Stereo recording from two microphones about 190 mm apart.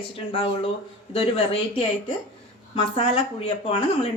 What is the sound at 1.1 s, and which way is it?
Speech, 30° left (ahead or behind).